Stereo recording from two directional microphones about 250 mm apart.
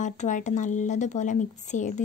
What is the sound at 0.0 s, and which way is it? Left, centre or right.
A woman's voice, left.